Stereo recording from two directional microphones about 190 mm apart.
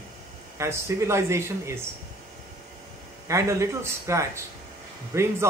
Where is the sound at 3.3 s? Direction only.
15° right (ahead or behind).